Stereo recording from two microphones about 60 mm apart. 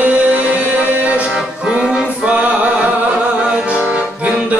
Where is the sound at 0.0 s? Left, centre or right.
Right.